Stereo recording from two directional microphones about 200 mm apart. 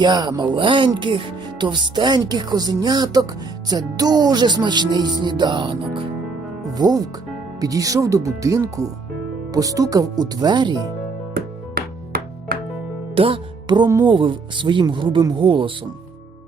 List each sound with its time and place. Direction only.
0.0 s speech: 20° right (ahead or behind)
11.3 s music: 50° right (ahead or behind)
13.1 s speech: 25° right (ahead or behind)